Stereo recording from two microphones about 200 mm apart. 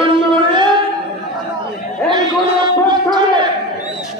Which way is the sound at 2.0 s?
20° right (ahead or behind).